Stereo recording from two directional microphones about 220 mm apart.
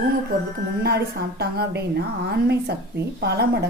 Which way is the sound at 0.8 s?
45° right (ahead or behind).